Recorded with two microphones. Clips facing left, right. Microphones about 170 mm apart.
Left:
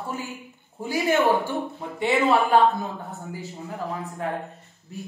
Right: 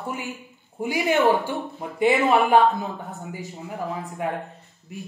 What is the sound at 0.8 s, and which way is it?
A woman's voice, 15° right (ahead or behind).